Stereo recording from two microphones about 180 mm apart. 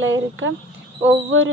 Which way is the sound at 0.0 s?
90° right.